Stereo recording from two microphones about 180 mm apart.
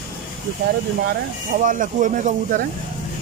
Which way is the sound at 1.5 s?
50° right (ahead or behind).